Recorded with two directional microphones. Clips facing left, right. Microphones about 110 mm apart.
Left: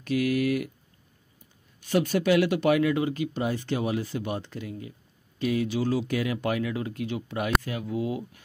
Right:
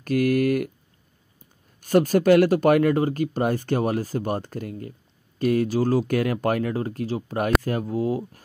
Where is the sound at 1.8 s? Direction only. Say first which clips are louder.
Right 6 dB; 45° right (ahead or behind).